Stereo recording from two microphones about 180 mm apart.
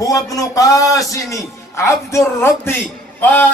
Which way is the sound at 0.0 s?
20° left (ahead or behind).